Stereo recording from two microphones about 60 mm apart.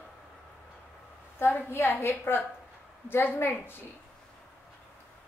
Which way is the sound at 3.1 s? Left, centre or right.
Left.